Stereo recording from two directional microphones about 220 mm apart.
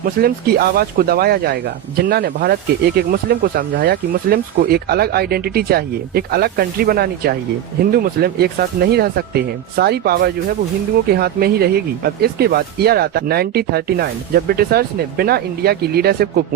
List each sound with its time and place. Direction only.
0.0 s speech: 45° right (ahead or behind)